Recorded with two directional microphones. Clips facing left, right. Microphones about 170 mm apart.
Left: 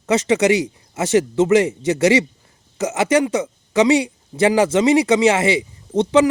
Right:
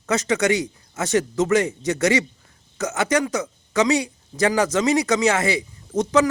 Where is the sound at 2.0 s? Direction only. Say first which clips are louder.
Left 5 dB; 30° left (ahead or behind).